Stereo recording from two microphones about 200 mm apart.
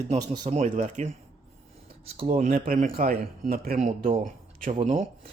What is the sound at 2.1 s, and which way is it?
Speech, 35° right (ahead or behind).